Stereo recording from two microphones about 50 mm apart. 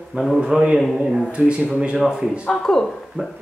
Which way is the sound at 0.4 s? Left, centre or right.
Centre.